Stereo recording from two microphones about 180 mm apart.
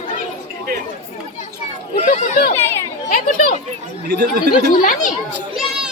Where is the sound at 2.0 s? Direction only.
50° left (ahead or behind).